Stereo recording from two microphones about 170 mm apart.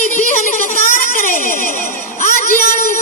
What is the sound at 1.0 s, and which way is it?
Fire alarm, 50° left (ahead or behind).